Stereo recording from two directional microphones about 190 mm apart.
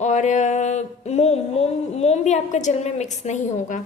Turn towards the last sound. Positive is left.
turn(degrees=40)  # may be behind; listen again after turning